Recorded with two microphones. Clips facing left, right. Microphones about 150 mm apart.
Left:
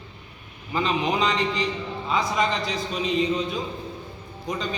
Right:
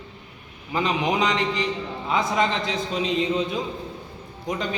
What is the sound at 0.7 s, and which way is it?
A man's voice, 20° right (ahead or behind).